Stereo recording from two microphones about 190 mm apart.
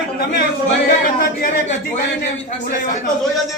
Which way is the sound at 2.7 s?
45° left (ahead or behind).